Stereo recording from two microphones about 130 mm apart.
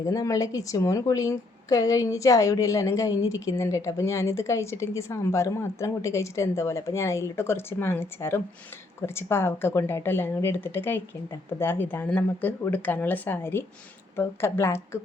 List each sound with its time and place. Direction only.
0.0 s a woman's voice: 25° left (ahead or behind)